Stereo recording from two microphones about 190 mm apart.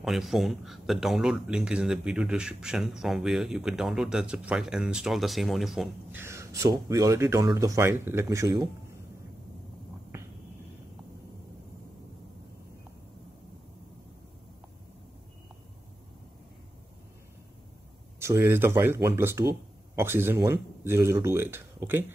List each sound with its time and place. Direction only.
0.0 s speech: centre (ahead or behind)
6.2 s speech: 15° right (ahead or behind)
18.2 s speech: 15° right (ahead or behind)